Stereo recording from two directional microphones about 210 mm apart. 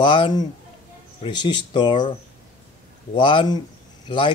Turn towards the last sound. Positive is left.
turn(degrees=20)  # may be behind; listen again after turning